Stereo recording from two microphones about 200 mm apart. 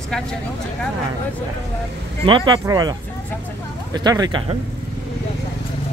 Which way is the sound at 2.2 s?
25° right (ahead or behind).